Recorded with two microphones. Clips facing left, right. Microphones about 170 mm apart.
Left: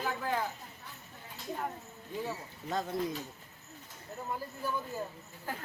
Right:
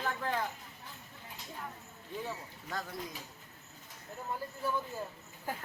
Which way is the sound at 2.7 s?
25° left (ahead or behind).